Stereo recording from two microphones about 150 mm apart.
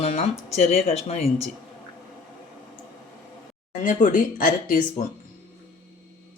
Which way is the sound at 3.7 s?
60° left (ahead or behind).